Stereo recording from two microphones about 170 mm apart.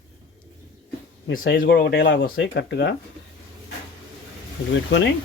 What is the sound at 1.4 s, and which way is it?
Speech, 75° left (ahead or behind).